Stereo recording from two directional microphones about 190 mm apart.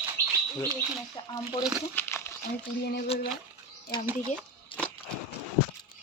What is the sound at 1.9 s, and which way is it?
Crumpling, 10° left (ahead or behind).